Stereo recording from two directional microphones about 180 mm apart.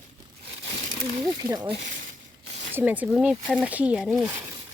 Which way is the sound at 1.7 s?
85° right.